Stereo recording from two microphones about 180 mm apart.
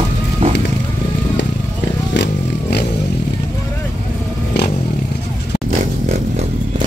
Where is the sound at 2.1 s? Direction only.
70° left (ahead or behind).